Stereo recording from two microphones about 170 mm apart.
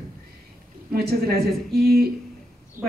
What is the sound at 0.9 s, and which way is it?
Speech, 60° right (ahead or behind).